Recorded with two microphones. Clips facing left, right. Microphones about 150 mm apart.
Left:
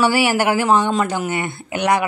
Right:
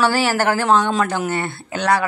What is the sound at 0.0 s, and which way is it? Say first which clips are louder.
A woman's voice: left 1 dB; 15° left (ahead or behind).